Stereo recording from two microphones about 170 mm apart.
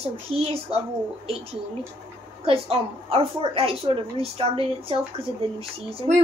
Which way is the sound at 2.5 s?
35° right (ahead or behind).